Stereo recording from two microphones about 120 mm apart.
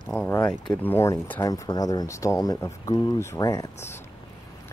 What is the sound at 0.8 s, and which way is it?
Speech, 20° left (ahead or behind).